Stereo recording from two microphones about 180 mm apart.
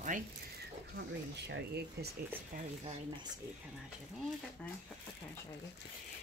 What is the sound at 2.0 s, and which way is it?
Speech, 65° right (ahead or behind).